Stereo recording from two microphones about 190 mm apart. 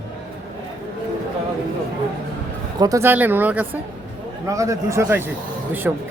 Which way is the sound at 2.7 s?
20° right (ahead or behind).